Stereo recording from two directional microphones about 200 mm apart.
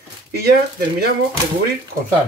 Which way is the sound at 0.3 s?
50° right (ahead or behind).